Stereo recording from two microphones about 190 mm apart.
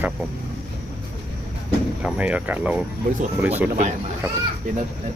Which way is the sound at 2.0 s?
5° right (ahead or behind).